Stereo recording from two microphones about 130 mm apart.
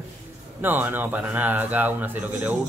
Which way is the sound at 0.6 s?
15° right (ahead or behind).